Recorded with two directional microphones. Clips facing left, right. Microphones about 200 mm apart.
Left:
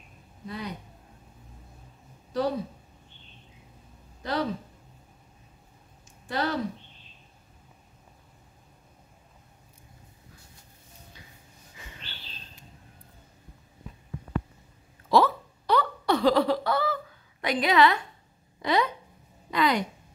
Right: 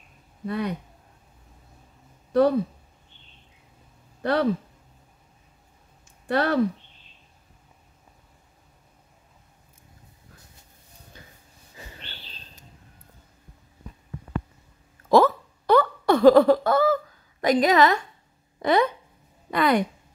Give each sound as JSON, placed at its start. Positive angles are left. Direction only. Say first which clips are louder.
{"t": 0.5, "sound": "speech", "louder": "right 8 dB", "side_deg": -60}
{"t": 4.2, "sound": "speech", "louder": "right 6 dB", "side_deg": -60}
{"t": 6.2, "sound": "speech", "louder": "right 6 dB", "side_deg": -60}
{"t": 11.7, "sound": "bird", "louder": "right 4 dB", "side_deg": -35}
{"t": 15.0, "sound": "a sound", "louder": "right 4 dB", "side_deg": -45}
{"t": 18.6, "sound": "speech", "louder": "right 5 dB", "side_deg": -50}